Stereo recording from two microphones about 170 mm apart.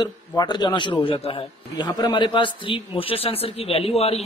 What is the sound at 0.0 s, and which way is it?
A man's voice, 25° left (ahead or behind).